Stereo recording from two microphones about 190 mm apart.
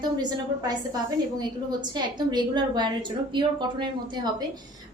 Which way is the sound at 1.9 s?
20° right (ahead or behind).